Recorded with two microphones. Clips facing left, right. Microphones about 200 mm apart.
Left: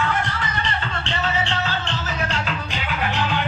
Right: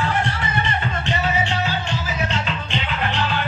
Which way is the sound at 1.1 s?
15° right (ahead or behind).